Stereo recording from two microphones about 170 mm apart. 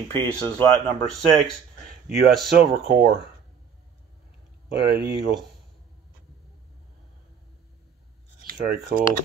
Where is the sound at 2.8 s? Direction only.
80° right.